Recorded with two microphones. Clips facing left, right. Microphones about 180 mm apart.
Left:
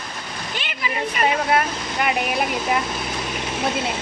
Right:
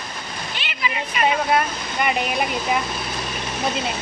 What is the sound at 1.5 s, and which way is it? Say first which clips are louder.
Speech: even; 5° left (ahead or behind).